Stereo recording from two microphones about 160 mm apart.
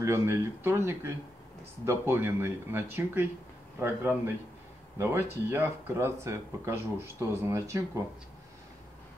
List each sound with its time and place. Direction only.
0.0 s speech: 15° right (ahead or behind)